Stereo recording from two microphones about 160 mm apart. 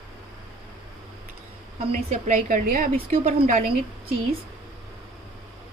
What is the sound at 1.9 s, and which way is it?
A woman's voice, 45° right (ahead or behind).